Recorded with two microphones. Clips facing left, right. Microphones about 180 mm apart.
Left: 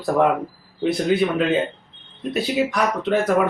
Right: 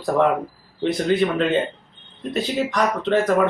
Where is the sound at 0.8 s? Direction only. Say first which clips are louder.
Even; 5° left (ahead or behind).